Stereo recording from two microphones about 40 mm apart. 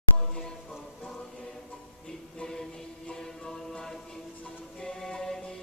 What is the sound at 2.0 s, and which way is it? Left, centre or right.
Music, centre.